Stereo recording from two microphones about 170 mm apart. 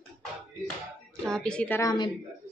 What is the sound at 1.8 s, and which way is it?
Speech, 20° left (ahead or behind).